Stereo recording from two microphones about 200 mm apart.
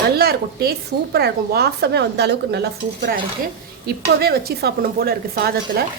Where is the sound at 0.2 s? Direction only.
50° right (ahead or behind).